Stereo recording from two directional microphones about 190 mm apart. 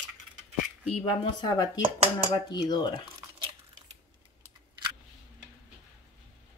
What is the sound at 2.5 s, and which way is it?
Speech, 20° left (ahead or behind).